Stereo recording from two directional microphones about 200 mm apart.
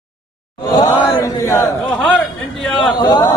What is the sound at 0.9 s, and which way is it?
Chant, 25° left (ahead or behind).